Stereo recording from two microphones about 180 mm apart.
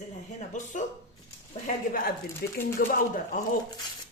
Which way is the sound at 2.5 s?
50° left (ahead or behind).